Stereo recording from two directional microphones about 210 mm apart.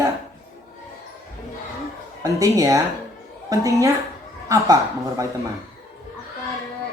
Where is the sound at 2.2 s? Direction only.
15° right (ahead or behind).